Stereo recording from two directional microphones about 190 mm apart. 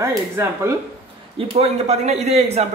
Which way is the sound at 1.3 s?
30° right (ahead or behind).